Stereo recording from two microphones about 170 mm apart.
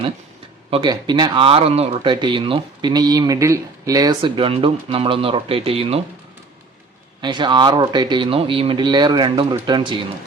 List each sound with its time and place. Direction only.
0.7 s speech: 25° right (ahead or behind)
7.2 s speech: 25° right (ahead or behind)